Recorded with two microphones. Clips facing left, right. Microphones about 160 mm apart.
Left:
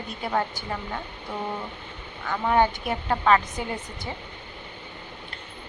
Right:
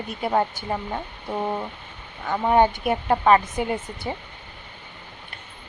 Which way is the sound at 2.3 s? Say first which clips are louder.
Right 3 dB; 20° right (ahead or behind).